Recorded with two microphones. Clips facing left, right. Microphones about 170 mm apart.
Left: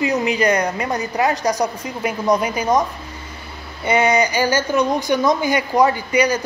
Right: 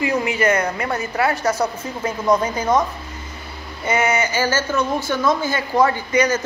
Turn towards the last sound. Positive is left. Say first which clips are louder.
# left 1 dB
turn(degrees=15)  # may be behind; listen again after turning